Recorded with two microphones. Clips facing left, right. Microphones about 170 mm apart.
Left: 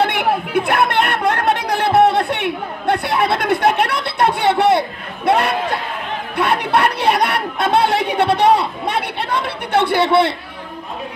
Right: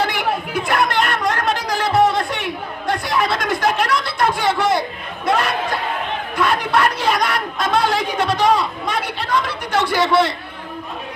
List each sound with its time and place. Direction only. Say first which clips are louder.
0.0 s chatter: left 3 dB; 60° left (ahead or behind)